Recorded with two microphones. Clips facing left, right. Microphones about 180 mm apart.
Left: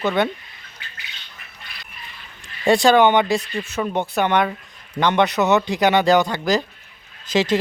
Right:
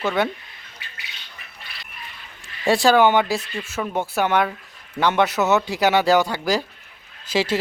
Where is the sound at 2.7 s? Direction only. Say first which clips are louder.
Left 2 dB; 5° right (ahead or behind).